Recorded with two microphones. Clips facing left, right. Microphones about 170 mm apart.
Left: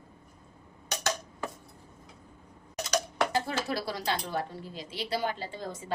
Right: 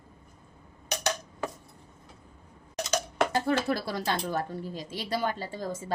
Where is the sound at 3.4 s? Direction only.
55° right (ahead or behind).